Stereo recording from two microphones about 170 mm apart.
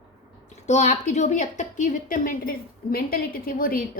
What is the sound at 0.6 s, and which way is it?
A woman's voice, 45° left (ahead or behind).